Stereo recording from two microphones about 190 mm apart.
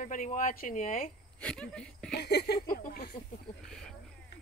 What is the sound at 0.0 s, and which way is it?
Speech, 45° left (ahead or behind).